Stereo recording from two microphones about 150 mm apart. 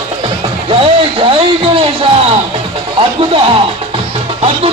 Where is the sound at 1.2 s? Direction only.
35° right (ahead or behind).